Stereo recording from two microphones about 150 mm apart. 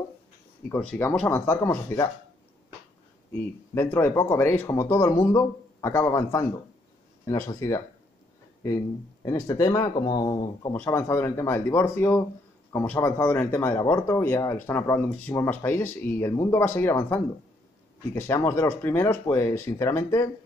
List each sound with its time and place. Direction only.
0.7 s speech: 10° left (ahead or behind)
3.3 s speech: 15° left (ahead or behind)
9.2 s speech: 20° left (ahead or behind)
10.7 s speech: 15° left (ahead or behind)